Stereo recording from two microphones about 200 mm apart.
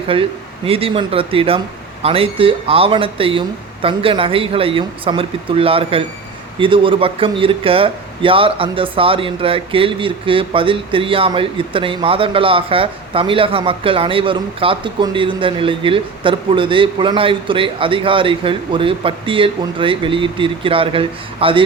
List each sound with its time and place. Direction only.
0.1 s speech: 25° right (ahead or behind)